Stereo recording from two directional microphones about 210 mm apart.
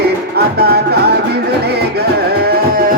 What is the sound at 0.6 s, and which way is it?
Music, 50° right (ahead or behind).